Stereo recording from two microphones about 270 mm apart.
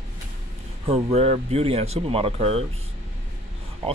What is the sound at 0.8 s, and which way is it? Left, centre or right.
Speech, right.